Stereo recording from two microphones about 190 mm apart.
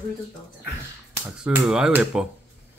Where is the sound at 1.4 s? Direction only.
5° right (ahead or behind).